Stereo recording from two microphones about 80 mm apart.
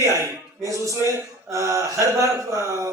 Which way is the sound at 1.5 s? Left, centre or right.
Right.